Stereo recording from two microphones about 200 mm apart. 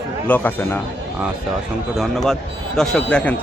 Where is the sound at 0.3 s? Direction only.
10° left (ahead or behind).